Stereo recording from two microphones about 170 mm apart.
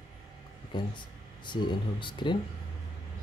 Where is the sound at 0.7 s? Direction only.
25° left (ahead or behind).